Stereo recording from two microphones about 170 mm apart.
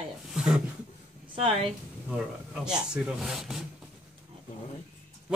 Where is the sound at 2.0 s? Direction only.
5° right (ahead or behind).